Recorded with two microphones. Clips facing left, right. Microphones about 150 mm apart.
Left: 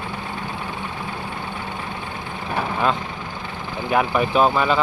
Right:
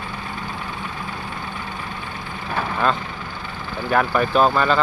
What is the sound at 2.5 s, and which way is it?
Vehicle, 10° left (ahead or behind).